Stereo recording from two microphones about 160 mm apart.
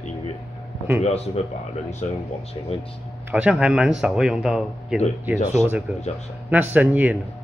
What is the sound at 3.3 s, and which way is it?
Speech, 5° right (ahead or behind).